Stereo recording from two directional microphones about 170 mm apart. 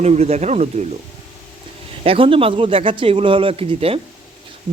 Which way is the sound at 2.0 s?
30° right (ahead or behind).